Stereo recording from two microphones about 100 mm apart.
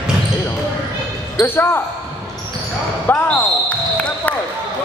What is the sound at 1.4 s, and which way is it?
Speech, 20° left (ahead or behind).